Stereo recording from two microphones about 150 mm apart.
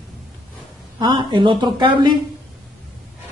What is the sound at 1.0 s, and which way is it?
A woman's voice, 30° right (ahead or behind).